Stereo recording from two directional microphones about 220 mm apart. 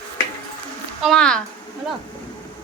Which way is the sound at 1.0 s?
5° left (ahead or behind).